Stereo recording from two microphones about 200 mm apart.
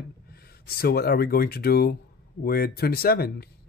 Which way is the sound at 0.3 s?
50° left (ahead or behind).